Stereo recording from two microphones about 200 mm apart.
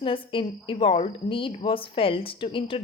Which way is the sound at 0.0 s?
25° left (ahead or behind).